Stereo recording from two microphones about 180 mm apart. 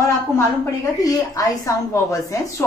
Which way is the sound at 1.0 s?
20° left (ahead or behind).